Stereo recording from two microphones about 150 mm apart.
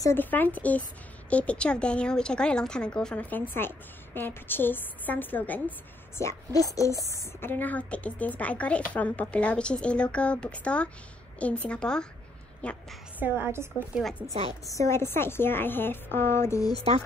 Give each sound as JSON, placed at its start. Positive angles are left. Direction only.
{"t": 0.0, "sound": "a woman's voice", "side_deg": 15}
{"t": 13.2, "sound": "a woman's voice", "side_deg": -15}
{"t": 14.7, "sound": "a woman's voice", "side_deg": 20}
{"t": 16.7, "sound": "speech", "side_deg": -45}